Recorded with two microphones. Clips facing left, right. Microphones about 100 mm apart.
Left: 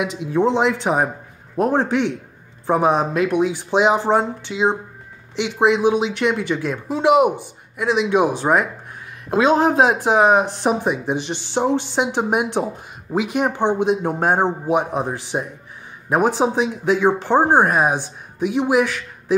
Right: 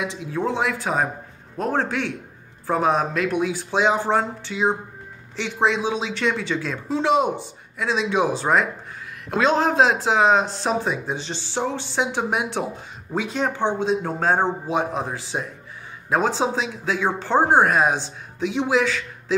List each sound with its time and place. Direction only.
0.0 s speech: 20° left (ahead or behind)